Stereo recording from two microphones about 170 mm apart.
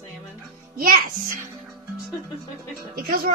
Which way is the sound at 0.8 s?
55° right (ahead or behind).